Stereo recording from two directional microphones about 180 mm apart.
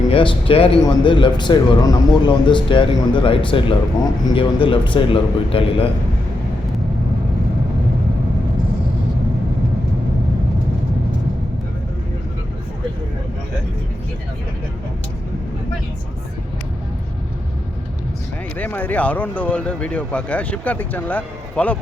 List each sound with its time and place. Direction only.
0.1 s a man's voice: 30° left (ahead or behind)
18.5 s speech: 10° left (ahead or behind)